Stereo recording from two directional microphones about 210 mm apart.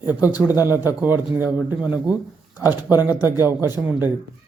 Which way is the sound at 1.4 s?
5° right (ahead or behind).